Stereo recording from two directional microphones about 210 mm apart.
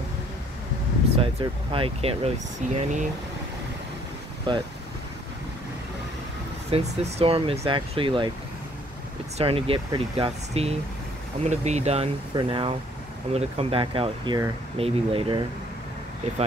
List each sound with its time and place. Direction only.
1.1 s speech: 25° right (ahead or behind)
4.5 s speech: 20° right (ahead or behind)
6.7 s speech: 30° right (ahead or behind)
9.4 s speech: 25° right (ahead or behind)